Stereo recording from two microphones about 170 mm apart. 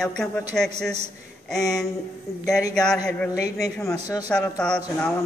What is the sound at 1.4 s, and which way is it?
Speech, centre (ahead or behind).